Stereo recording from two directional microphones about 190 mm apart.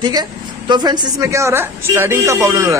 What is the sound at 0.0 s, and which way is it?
A woman's voice, 20° right (ahead or behind).